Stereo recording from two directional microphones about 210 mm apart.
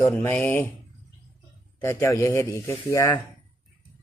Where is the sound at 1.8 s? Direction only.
10° left (ahead or behind).